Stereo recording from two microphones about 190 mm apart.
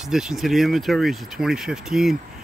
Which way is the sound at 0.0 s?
Centre (ahead or behind).